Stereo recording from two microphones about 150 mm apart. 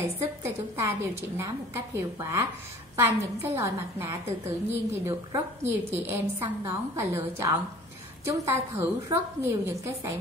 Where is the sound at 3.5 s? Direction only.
20° right (ahead or behind).